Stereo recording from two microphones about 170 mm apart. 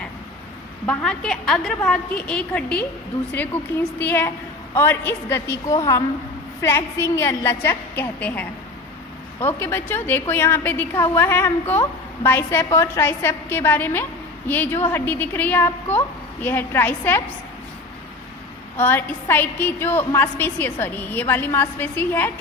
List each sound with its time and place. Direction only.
0.9 s a woman's voice: 5° left (ahead or behind)
18.8 s a woman's voice: 10° left (ahead or behind)